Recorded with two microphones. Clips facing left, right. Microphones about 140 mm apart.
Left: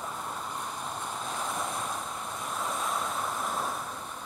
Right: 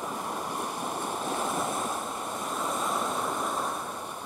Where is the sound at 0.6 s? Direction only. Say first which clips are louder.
Right 4 dB; 60° right (ahead or behind).